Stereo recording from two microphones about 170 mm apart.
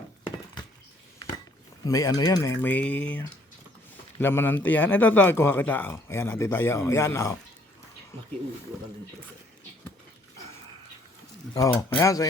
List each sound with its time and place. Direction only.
1.8 s a man's voice: 20° left (ahead or behind)
11.5 s speech: 20° left (ahead or behind)